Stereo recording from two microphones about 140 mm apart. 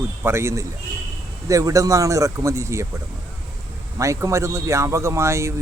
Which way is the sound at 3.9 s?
20° right (ahead or behind).